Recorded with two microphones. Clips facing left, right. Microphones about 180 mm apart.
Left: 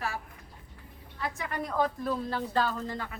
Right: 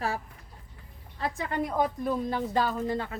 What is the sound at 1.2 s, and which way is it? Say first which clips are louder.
A woman's voice: right 4 dB; 30° right (ahead or behind).